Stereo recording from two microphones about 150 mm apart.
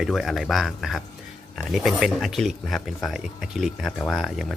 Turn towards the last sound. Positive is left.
turn(degrees=0)  # may be behind; listen again after turning